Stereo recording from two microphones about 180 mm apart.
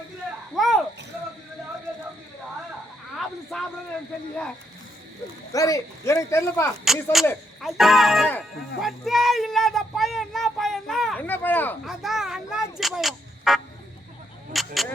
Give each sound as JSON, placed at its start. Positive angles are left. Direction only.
{"t": 0.5, "sound": "a sound", "side_deg": 0}
{"t": 3.2, "sound": "a sound", "side_deg": 0}
{"t": 5.5, "sound": "speech", "side_deg": 20}
{"t": 6.8, "sound": "speech", "side_deg": 0}
{"t": 11.9, "sound": "a child's voice", "side_deg": 0}
{"t": 14.5, "sound": "mouse", "side_deg": 0}